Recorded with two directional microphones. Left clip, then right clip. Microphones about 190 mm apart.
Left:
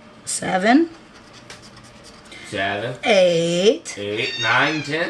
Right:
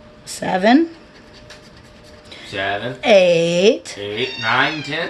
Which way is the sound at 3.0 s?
20° right (ahead or behind).